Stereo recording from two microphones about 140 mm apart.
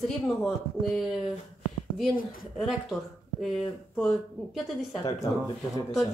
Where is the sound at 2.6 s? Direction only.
Centre (ahead or behind).